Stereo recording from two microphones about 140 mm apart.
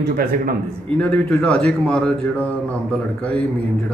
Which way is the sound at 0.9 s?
10° left (ahead or behind).